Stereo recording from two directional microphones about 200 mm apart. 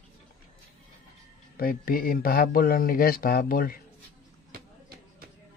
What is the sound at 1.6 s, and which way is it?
Speech, 45° left (ahead or behind).